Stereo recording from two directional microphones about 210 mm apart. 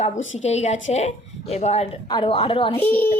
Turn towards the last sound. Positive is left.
turn(degrees=10)  # may be behind; listen again after turning